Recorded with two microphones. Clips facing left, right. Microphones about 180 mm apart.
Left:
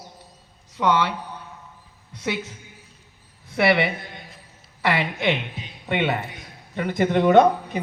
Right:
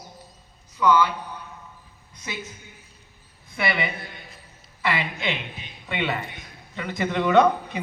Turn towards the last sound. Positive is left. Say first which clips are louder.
# left 3 dB
turn(degrees=45)  # may be behind; listen again after turning